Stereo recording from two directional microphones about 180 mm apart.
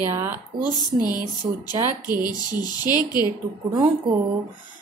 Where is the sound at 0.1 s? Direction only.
10° right (ahead or behind).